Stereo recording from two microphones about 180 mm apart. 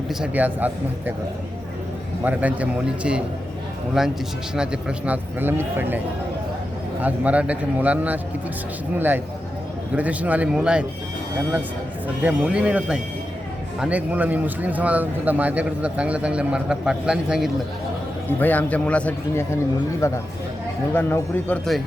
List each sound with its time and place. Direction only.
0.1 s speech: 5° right (ahead or behind)
2.2 s a man's voice: 10° right (ahead or behind)
7.0 s speech: 10° right (ahead or behind)
12.0 s speech: 10° right (ahead or behind)
18.3 s a man's voice: 10° left (ahead or behind)